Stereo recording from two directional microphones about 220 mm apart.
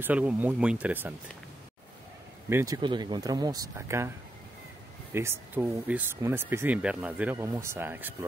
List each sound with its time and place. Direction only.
0.0 s speech: 5° right (ahead or behind)
2.5 s speech: 15° right (ahead or behind)
5.1 s speech: 10° right (ahead or behind)